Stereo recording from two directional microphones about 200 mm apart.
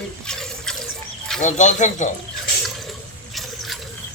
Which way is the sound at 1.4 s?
35° left (ahead or behind).